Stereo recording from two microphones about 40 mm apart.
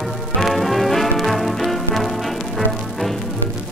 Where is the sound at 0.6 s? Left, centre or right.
Centre.